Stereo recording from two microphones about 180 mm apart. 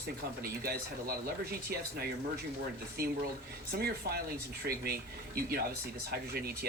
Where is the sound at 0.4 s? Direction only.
55° right (ahead or behind).